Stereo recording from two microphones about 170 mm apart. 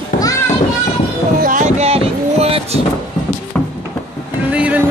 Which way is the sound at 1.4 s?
50° right (ahead or behind).